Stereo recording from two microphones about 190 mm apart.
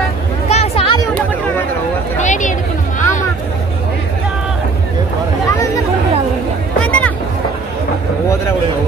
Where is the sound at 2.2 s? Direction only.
40° left (ahead or behind).